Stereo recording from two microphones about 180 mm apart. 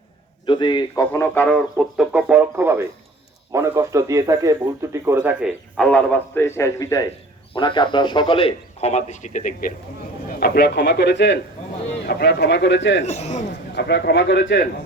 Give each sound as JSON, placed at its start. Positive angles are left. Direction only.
{"t": 0.4, "sound": "a man's voice", "side_deg": 25}
{"t": 2.0, "sound": "speech", "side_deg": -5}
{"t": 5.7, "sound": "a man's voice", "side_deg": 5}
{"t": 10.2, "sound": "a man's voice", "side_deg": 60}
{"t": 13.1, "sound": "a man's voice", "side_deg": 40}
{"t": 13.7, "sound": "a man's voice", "side_deg": 70}